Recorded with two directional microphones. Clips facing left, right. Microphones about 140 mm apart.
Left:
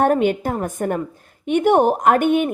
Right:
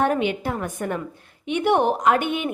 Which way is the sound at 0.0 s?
45° left (ahead or behind).